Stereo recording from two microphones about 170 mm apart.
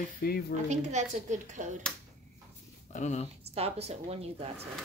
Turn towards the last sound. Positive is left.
turn(degrees=-35)  # may be behind; listen again after turning